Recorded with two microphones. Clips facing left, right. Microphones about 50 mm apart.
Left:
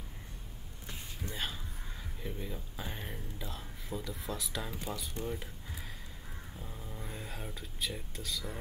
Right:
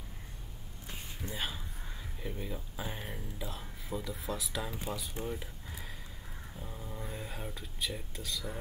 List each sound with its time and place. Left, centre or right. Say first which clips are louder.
1.3 s a man's voice: right 1 dB; centre